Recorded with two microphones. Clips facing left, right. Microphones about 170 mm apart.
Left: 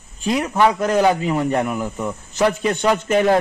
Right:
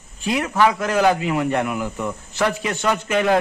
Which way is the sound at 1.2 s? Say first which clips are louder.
Left 1 dB; 30° left (ahead or behind).